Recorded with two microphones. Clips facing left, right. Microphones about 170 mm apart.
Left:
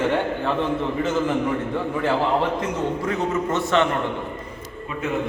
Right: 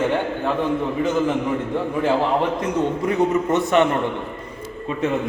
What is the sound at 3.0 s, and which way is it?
Speech, 15° right (ahead or behind).